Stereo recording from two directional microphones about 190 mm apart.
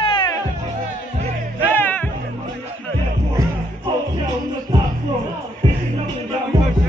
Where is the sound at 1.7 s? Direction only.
10° left (ahead or behind).